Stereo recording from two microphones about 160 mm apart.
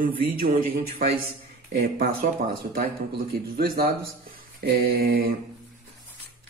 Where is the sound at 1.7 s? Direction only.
70° right (ahead or behind).